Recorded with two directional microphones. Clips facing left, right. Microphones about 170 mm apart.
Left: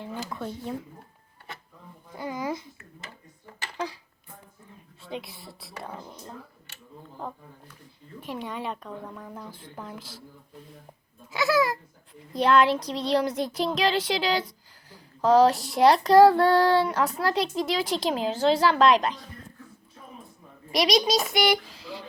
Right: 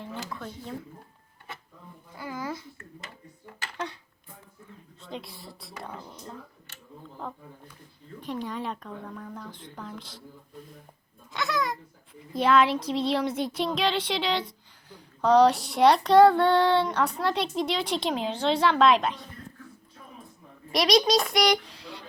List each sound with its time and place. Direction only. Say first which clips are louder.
0.1 s speech: left 3 dB; 20° left (ahead or behind)
2.1 s a sound: left 4 dB; 20° left (ahead or behind)
5.0 s speech: left 2 dB; centre (ahead or behind)
6.0 s speech: left 1 dB; 15° left (ahead or behind)
8.2 s speech: right 1 dB; centre (ahead or behind)
11.3 s a sound: left 6 dB; 5° left (ahead or behind)
12.3 s speech: left 1 dB; centre (ahead or behind)
20.7 s speech: right 1 dB; centre (ahead or behind)